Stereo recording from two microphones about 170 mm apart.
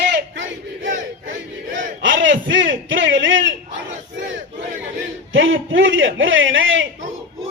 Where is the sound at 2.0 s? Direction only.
90° right.